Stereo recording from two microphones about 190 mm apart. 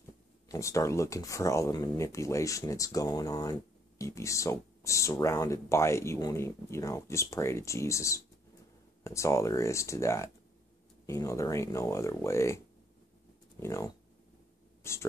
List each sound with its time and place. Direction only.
0.5 s speech: 15° left (ahead or behind)